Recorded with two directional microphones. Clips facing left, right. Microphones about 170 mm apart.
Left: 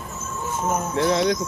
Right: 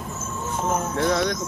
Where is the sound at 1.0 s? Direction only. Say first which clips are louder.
Left 3 dB; 30° left (ahead or behind).